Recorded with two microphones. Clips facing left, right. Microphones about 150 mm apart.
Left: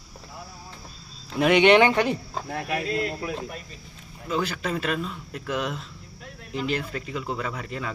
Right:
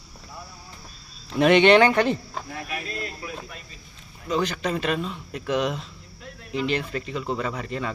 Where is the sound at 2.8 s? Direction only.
75° left (ahead or behind).